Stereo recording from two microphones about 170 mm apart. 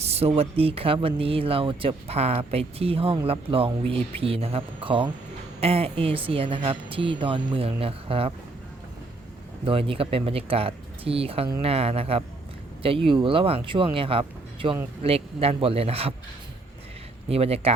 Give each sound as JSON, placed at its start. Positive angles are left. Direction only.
{"t": 0.0, "sound": "speech", "side_deg": -35}
{"t": 9.6, "sound": "speech", "side_deg": -30}
{"t": 17.2, "sound": "speech", "side_deg": -35}